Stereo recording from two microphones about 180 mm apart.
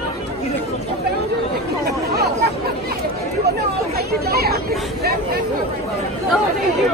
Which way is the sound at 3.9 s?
60° right (ahead or behind).